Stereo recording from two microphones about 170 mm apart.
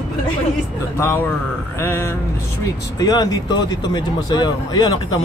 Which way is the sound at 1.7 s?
15° left (ahead or behind).